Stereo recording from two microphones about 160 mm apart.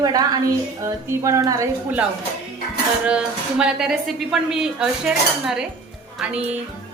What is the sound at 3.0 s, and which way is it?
A woman's voice, 5° right (ahead or behind).